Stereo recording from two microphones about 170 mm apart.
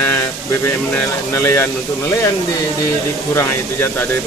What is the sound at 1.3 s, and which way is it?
Speech, 15° left (ahead or behind).